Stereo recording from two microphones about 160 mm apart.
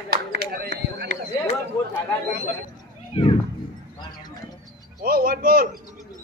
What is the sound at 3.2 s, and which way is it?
Speech, 40° left (ahead or behind).